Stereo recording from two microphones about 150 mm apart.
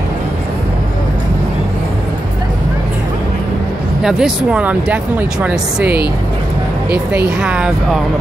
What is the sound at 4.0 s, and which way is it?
Speech, 5° right (ahead or behind).